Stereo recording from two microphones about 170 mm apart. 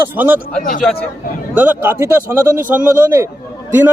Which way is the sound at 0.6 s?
50° left (ahead or behind).